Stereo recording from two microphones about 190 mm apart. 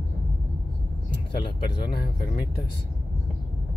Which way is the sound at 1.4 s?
25° left (ahead or behind).